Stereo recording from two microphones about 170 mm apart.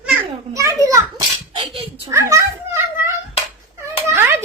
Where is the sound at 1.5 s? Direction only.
35° right (ahead or behind).